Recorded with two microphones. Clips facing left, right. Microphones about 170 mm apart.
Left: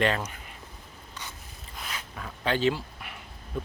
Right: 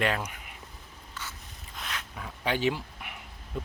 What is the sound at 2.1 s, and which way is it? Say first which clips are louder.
Dog: left 2 dB; 10° right (ahead or behind).